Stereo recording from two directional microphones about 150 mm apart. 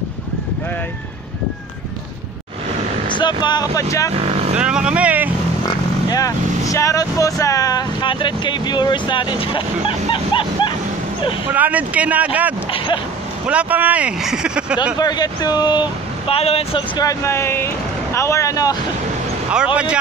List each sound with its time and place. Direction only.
3.1 s speech: 30° left (ahead or behind)
4.1 s speech: 45° right (ahead or behind)
4.6 s speech: 5° right (ahead or behind)
6.0 s speech: 25° left (ahead or behind)
11.4 s speech: 10° right (ahead or behind)
12.7 s speech: 35° left (ahead or behind)
13.5 s speech: 10° right (ahead or behind)
15.0 s speech: 25° left (ahead or behind)
19.5 s speech: 5° right (ahead or behind)